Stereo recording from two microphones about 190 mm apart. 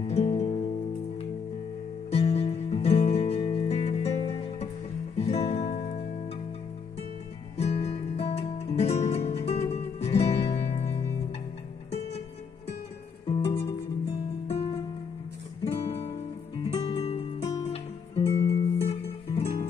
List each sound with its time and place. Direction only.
0.0 s music: 35° left (ahead or behind)
2.0 s music: 35° left (ahead or behind)
7.5 s music: 35° left (ahead or behind)
13.3 s music: 25° left (ahead or behind)
15.6 s music: 30° left (ahead or behind)